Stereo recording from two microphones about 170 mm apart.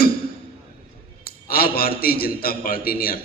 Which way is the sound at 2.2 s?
60° left (ahead or behind).